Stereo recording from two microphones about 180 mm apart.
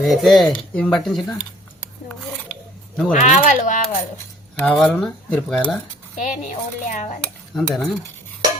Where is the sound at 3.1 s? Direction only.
45° left (ahead or behind).